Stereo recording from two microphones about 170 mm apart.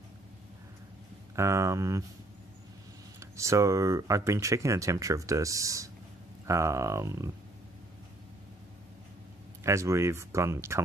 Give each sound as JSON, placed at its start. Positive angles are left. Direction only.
{"t": 1.3, "sound": "speech", "side_deg": -15}
{"t": 3.2, "sound": "speech", "side_deg": -15}
{"t": 9.6, "sound": "speech", "side_deg": -15}